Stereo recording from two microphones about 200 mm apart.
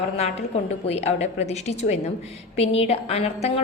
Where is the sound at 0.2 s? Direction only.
30° left (ahead or behind).